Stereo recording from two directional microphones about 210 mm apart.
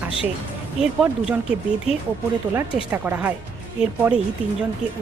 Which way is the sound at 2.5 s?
10° right (ahead or behind).